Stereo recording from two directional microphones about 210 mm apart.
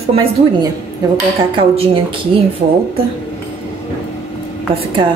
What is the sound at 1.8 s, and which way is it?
Speech, 25° right (ahead or behind).